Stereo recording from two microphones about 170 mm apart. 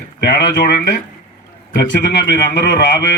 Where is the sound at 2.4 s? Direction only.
85° left.